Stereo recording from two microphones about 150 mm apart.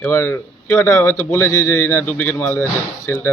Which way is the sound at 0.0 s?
15° left (ahead or behind).